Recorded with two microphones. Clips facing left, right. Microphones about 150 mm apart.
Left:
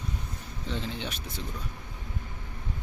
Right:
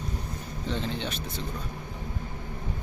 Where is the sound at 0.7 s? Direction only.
5° left (ahead or behind).